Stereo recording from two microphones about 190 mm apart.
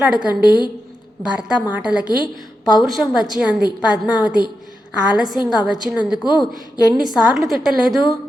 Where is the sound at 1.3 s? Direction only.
5° right (ahead or behind).